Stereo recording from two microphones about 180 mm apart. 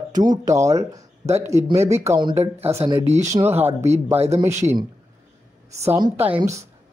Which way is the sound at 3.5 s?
35° right (ahead or behind).